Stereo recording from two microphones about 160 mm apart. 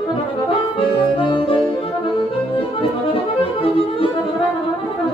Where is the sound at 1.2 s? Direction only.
35° left (ahead or behind).